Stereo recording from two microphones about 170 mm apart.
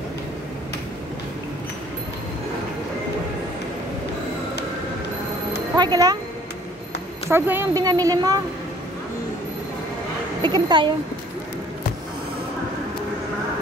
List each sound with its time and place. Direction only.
5.8 s speech: 25° right (ahead or behind)
7.2 s speech: 15° right (ahead or behind)
10.4 s speech: 25° right (ahead or behind)